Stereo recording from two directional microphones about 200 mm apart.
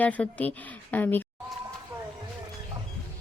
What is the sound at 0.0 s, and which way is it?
Speech, 5° left (ahead or behind).